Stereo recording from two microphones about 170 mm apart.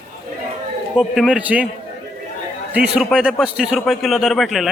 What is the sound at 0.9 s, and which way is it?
Speech, centre (ahead or behind).